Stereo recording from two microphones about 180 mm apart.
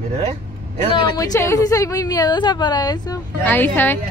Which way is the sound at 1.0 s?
15° left (ahead or behind).